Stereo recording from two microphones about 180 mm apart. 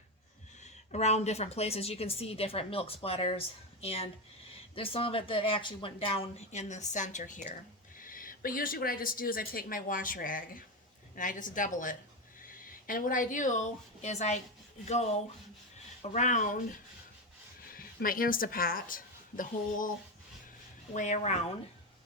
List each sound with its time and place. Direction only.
0.6 s a woman's voice: 40° left (ahead or behind)
17.7 s a woman's voice: 55° left (ahead or behind)
20.9 s speech: 40° left (ahead or behind)